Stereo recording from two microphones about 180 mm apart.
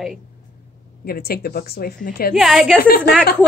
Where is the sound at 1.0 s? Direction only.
55° left (ahead or behind).